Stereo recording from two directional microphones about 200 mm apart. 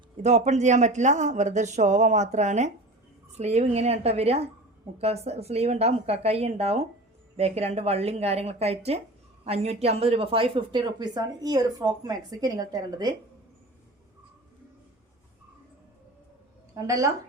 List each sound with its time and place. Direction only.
0.2 s speech: 35° right (ahead or behind); by 13.1 s 20° right (ahead or behind)
16.7 s a woman's voice: 15° right (ahead or behind)